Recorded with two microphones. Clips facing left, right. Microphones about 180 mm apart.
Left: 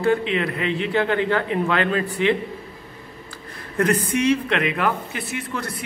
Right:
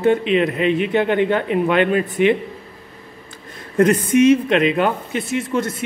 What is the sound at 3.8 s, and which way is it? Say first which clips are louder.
Speech: right 7 dB; 25° right (ahead or behind).